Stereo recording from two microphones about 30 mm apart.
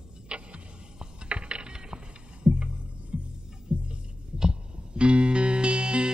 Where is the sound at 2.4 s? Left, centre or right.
Right.